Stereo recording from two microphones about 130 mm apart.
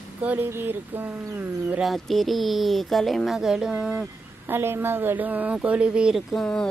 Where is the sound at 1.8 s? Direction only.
Centre (ahead or behind).